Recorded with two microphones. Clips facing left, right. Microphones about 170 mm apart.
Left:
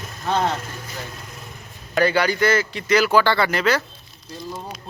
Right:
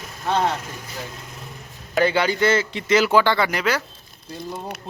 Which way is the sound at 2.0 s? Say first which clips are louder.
Even; 20° right (ahead or behind).